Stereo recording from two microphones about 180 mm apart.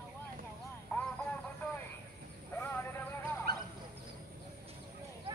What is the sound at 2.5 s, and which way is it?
Vehicle, 10° left (ahead or behind).